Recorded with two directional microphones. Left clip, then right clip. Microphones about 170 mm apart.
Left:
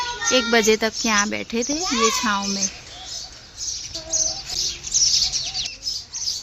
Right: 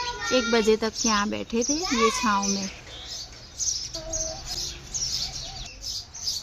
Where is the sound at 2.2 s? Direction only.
10° left (ahead or behind).